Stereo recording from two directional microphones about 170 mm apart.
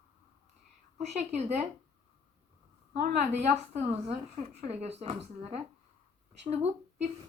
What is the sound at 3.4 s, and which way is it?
A woman's voice, 40° right (ahead or behind).